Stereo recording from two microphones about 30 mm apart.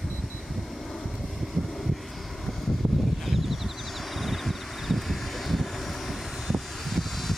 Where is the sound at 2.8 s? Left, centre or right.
Right.